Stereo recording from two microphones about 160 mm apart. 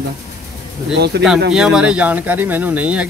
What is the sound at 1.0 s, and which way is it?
Speech, 90° right.